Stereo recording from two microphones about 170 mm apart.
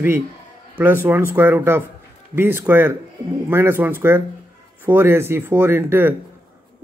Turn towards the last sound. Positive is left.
turn(degrees=-15)  # may be behind; listen again after turning